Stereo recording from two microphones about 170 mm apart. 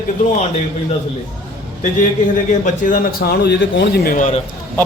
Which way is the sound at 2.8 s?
55° left (ahead or behind).